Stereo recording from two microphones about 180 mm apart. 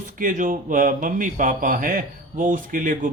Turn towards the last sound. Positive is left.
turn(degrees=-50)  # may be behind; listen again after turning